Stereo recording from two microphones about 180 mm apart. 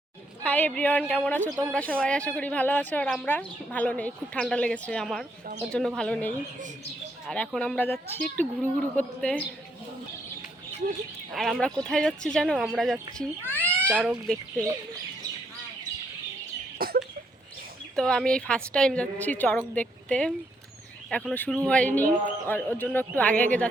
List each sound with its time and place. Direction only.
0.4 s a woman's voice: 10° left (ahead or behind)
11.3 s a woman's voice: centre (ahead or behind)
16.7 s a sound: 55° right (ahead or behind)
17.9 s a woman's voice: 5° left (ahead or behind)